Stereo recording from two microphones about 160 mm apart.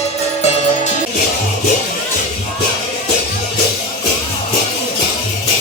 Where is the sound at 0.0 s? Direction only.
45° left (ahead or behind).